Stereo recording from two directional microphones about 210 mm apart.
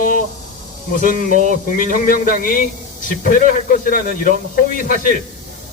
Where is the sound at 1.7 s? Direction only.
40° left (ahead or behind).